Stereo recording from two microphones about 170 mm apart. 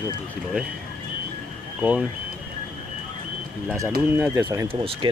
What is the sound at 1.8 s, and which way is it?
Speech, 5° right (ahead or behind).